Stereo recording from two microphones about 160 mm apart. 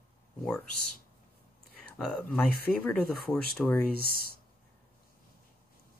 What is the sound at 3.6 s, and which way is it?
Speech, 10° left (ahead or behind).